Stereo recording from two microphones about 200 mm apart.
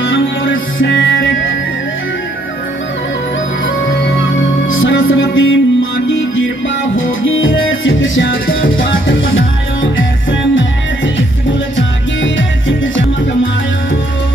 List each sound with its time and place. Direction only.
0.0 s music: 70° left (ahead or behind)
4.6 s music: 75° left (ahead or behind)
11.7 s music: 70° left (ahead or behind)